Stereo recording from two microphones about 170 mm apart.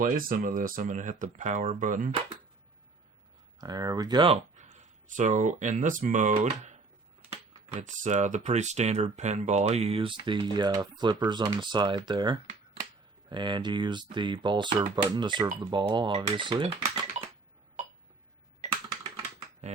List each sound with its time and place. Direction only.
0.0 s speech: 55° right (ahead or behind)
3.6 s speech: 20° right (ahead or behind)
4.5 s speech: 45° right (ahead or behind)
7.8 s speech: 45° right (ahead or behind); by 17.2 s 30° right (ahead or behind)
19.6 s speech: 40° right (ahead or behind)